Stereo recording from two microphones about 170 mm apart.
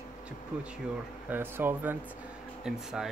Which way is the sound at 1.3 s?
10° right (ahead or behind).